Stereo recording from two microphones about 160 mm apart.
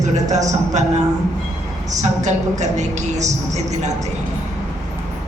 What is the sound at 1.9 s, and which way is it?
A woman's voice, 45° right (ahead or behind).